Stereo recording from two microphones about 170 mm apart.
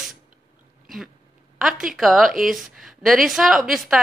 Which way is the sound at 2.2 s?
55° right (ahead or behind).